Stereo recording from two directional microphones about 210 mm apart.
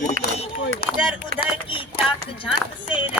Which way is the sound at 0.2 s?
45° right (ahead or behind).